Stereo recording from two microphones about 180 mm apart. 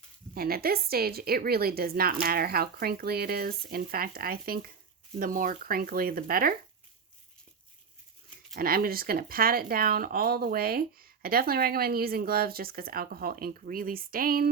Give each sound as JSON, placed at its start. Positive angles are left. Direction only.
{"t": 0.3, "sound": "speech", "side_deg": -55}
{"t": 8.5, "sound": "speech", "side_deg": -55}